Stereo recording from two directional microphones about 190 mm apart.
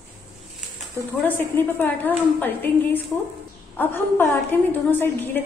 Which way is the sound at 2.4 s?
10° left (ahead or behind).